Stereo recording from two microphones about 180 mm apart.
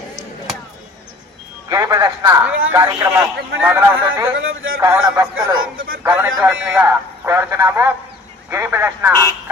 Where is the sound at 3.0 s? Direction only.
10° right (ahead or behind).